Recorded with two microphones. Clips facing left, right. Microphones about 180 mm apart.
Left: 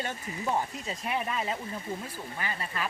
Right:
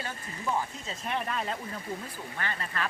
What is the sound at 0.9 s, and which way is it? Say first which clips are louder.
Speech: even; 5° left (ahead or behind).